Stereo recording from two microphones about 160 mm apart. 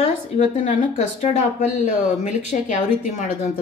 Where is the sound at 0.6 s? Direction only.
50° left (ahead or behind).